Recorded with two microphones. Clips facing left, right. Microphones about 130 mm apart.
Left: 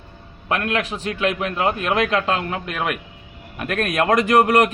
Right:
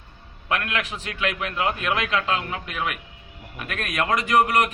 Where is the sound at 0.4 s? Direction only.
35° left (ahead or behind).